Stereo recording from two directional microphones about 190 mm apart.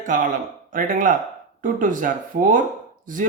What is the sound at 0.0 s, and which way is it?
Speech, 45° right (ahead or behind).